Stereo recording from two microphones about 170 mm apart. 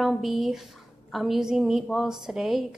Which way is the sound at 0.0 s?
Centre (ahead or behind).